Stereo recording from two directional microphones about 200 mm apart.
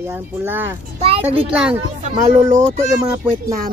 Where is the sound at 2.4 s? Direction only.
15° right (ahead or behind).